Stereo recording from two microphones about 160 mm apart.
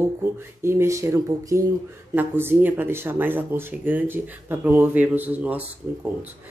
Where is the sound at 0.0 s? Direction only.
15° right (ahead or behind).